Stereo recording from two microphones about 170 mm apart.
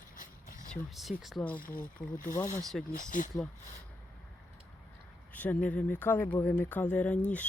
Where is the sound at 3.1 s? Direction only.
50° left (ahead or behind).